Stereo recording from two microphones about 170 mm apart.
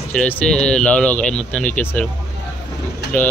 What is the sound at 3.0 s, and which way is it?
Vehicle, 80° left.